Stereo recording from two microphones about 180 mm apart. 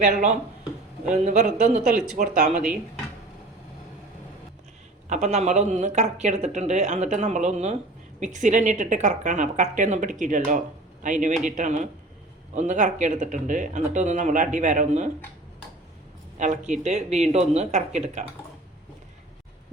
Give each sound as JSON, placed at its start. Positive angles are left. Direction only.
{"t": 0.0, "sound": "speech", "side_deg": -40}
{"t": 5.0, "sound": "speech", "side_deg": -40}
{"t": 16.4, "sound": "speech", "side_deg": -40}